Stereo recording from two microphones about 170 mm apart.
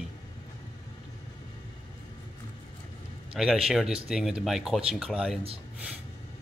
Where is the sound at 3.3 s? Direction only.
Centre (ahead or behind).